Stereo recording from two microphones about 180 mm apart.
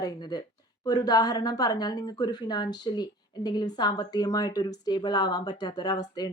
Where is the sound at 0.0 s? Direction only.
20° left (ahead or behind).